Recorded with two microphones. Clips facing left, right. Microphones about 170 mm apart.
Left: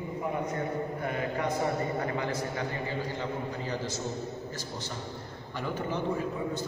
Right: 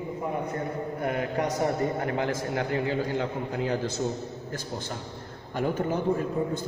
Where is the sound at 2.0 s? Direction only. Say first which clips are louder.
Right 3 dB; 70° right (ahead or behind).